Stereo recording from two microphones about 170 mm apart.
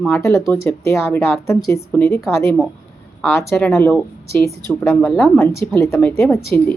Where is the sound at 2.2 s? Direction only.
Centre (ahead or behind).